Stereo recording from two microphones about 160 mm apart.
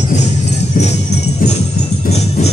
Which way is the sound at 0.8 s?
60° left (ahead or behind).